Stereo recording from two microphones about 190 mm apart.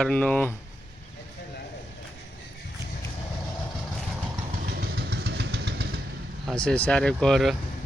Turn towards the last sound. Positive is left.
turn(degrees=0)  # may be behind; listen again after turning